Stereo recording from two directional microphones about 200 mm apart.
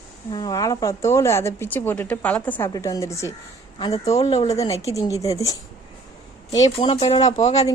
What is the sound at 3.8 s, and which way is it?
Speech, 30° left (ahead or behind).